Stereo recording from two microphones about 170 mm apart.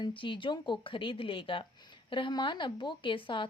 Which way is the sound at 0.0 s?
30° left (ahead or behind).